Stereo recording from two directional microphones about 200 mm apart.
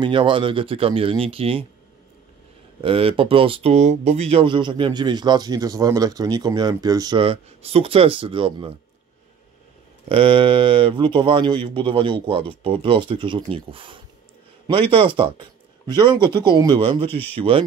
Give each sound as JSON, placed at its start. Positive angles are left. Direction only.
{"t": 0.0, "sound": "speech", "side_deg": -25}
{"t": 2.8, "sound": "speech", "side_deg": -30}
{"t": 10.0, "sound": "speech", "side_deg": -25}